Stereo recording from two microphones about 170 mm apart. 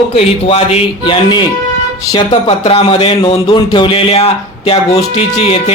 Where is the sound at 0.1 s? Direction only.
35° left (ahead or behind).